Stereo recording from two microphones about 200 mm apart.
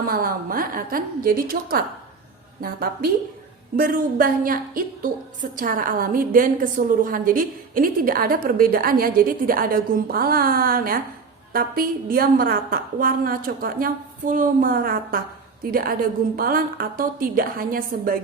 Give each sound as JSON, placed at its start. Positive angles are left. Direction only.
{"t": 0.0, "sound": "a woman's voice", "side_deg": -45}